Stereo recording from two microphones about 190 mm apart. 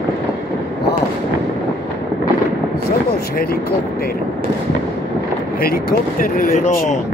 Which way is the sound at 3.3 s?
50° left (ahead or behind).